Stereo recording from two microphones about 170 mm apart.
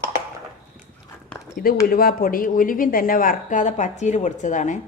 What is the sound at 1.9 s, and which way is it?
Speech, 60° left (ahead or behind).